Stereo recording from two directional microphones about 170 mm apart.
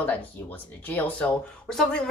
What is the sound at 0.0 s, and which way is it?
A woman's voice, 10° left (ahead or behind).